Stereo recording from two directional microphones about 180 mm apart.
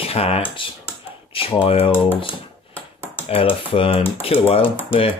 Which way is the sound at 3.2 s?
35° left (ahead or behind).